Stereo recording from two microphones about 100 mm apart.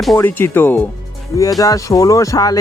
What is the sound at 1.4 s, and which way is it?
Speech, 35° left (ahead or behind).